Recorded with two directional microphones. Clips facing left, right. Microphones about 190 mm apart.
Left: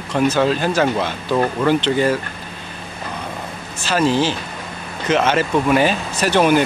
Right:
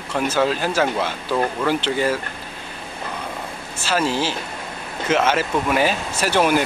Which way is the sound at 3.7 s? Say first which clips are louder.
Left 4 dB; 10° right (ahead or behind).